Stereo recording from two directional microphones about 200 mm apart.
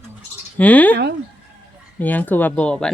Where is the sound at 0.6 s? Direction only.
10° left (ahead or behind).